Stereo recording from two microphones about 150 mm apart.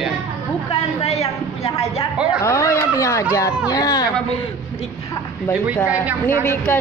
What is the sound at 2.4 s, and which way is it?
Speech, 20° left (ahead or behind).